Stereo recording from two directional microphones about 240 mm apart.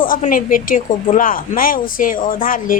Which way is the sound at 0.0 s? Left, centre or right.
Left.